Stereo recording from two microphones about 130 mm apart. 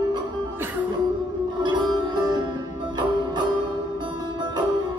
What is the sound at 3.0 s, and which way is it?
Music, 35° right (ahead or behind).